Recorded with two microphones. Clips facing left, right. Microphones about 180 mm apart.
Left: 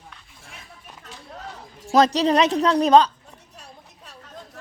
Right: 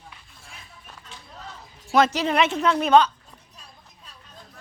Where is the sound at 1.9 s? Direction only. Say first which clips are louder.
Left 3 dB; 35° left (ahead or behind).